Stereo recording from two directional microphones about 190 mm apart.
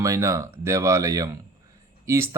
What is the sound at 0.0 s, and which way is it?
Speech, 15° right (ahead or behind).